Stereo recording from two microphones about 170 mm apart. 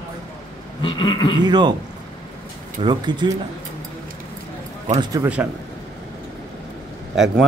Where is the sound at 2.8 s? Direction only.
25° right (ahead or behind).